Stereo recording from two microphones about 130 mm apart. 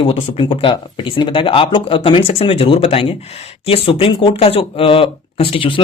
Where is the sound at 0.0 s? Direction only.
45° left (ahead or behind).